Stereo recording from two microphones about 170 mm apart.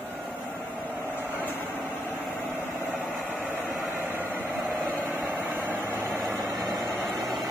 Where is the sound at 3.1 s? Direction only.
Centre (ahead or behind); by 6.9 s 20° right (ahead or behind).